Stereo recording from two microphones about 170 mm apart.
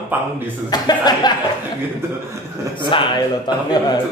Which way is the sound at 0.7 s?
25° left (ahead or behind).